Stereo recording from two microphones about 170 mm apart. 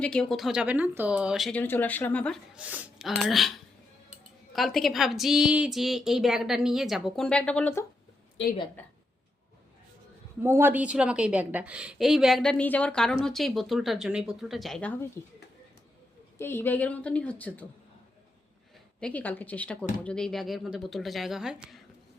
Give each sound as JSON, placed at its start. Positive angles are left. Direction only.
{"t": 0.0, "sound": "a woman's voice", "side_deg": 5}
{"t": 2.6, "sound": "a woman's voice", "side_deg": -10}
{"t": 4.5, "sound": "a woman's voice", "side_deg": 0}
{"t": 8.4, "sound": "a woman's voice", "side_deg": 90}
{"t": 10.4, "sound": "a woman's voice", "side_deg": -15}
{"t": 16.4, "sound": "a woman's voice", "side_deg": 15}
{"t": 18.9, "sound": "a woman's voice", "side_deg": 5}